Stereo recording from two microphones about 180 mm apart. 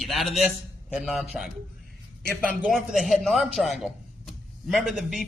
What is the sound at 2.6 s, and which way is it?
A man's voice, 5° right (ahead or behind).